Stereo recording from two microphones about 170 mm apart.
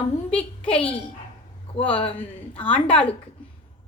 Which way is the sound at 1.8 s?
30° left (ahead or behind).